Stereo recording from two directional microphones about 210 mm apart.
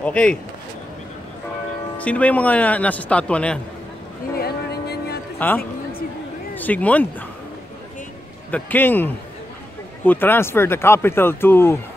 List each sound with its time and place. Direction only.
0.0 s speech: 5° left (ahead or behind)
2.0 s speech: 5° left (ahead or behind)
4.4 s music: 50° left (ahead or behind)
6.5 s speech: 10° left (ahead or behind)
8.5 s speech: 10° left (ahead or behind)